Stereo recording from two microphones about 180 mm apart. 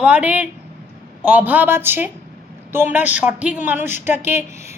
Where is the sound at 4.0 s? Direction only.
10° right (ahead or behind).